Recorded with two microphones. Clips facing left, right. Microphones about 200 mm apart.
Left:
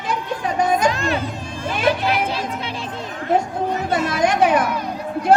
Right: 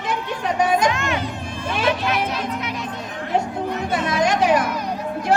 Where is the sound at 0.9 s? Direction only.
35° left (ahead or behind).